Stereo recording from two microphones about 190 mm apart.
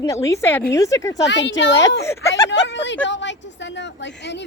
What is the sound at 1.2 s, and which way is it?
Speech, 70° left (ahead or behind).